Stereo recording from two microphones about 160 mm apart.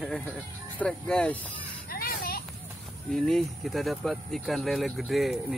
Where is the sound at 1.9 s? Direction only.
65° left (ahead or behind).